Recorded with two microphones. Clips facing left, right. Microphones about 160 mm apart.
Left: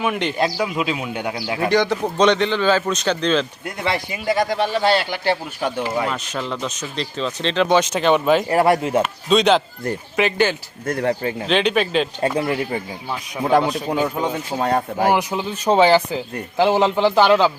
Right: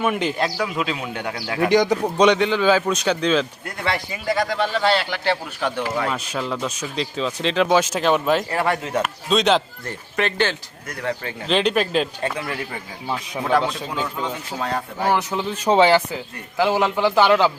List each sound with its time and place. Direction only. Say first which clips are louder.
0.0 s speech: even; 5° right (ahead or behind)
0.3 s speech: left 2 dB; 10° left (ahead or behind)
1.7 s speech: right 1 dB; 15° right (ahead or behind)
3.8 s speech: left 2 dB; 20° left (ahead or behind)
6.1 s speech: even; 5° right (ahead or behind)
8.5 s speech: left 6 dB; 35° left (ahead or behind)
9.0 s speech: left 3 dB; centre (ahead or behind)
11.1 s speech: left 6 dB; 30° left (ahead or behind)
11.4 s speech: even; centre (ahead or behind)
12.4 s speech: left 7 dB; 20° left (ahead or behind)
14.6 s speech: left 5 dB; 45° left (ahead or behind)
15.1 s speech: left 2 dB; 15° left (ahead or behind)